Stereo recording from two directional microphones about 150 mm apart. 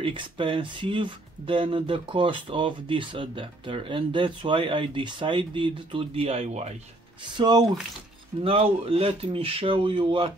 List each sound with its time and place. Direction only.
0.0 s speech: 35° right (ahead or behind)
7.3 s speech: 30° right (ahead or behind)